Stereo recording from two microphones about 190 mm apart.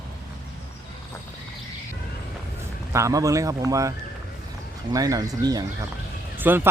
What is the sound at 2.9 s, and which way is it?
Speech, 15° right (ahead or behind).